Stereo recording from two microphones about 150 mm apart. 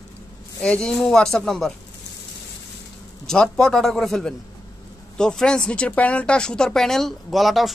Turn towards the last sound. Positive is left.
turn(degrees=0)  # may be behind; listen again after turning